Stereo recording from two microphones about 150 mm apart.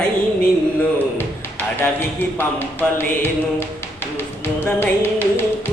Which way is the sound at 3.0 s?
15° left (ahead or behind).